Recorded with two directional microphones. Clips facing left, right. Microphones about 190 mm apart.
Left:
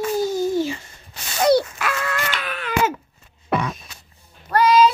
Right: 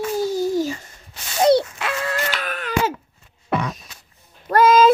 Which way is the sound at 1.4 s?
25° right (ahead or behind).